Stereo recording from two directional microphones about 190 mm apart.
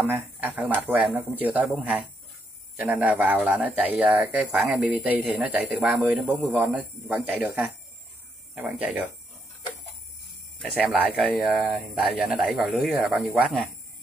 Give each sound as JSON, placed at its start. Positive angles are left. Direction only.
{"t": 0.0, "sound": "speech", "side_deg": -10}
{"t": 10.6, "sound": "speech", "side_deg": 0}